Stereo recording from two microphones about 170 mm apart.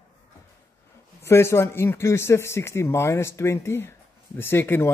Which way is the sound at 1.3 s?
15° left (ahead or behind).